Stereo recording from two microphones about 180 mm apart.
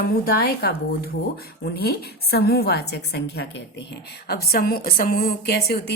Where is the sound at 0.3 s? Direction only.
55° left (ahead or behind).